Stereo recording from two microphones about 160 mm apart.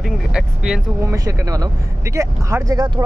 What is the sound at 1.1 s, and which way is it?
Speech, 20° right (ahead or behind).